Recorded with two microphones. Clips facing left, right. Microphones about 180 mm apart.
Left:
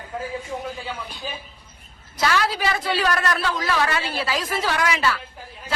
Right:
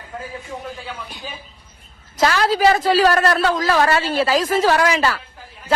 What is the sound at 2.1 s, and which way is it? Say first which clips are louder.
A man's voice: right 5 dB; 40° right (ahead or behind).